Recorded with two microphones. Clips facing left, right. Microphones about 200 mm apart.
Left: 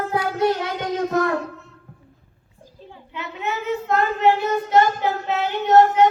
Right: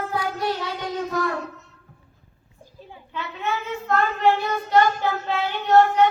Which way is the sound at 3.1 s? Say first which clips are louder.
Even; 20° left (ahead or behind).